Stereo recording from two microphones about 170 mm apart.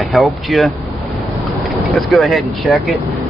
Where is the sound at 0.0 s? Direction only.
Centre (ahead or behind).